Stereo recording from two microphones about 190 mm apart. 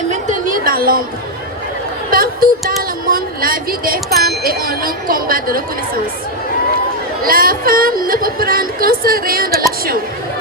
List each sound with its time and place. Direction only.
0.1 s chatter: 40° right (ahead or behind)
2.0 s speech: 50° right (ahead or behind)
7.2 s speech: 50° right (ahead or behind)